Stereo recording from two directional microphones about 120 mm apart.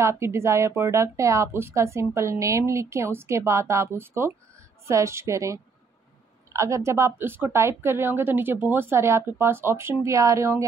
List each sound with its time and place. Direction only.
0.0 s a woman's voice: 20° right (ahead or behind)